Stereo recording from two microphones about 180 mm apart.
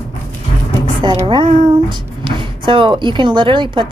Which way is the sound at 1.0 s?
25° right (ahead or behind).